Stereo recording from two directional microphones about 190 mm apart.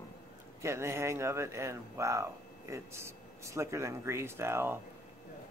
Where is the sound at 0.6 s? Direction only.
15° right (ahead or behind).